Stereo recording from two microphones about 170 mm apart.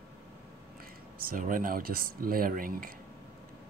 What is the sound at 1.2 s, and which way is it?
Speech, 55° right (ahead or behind).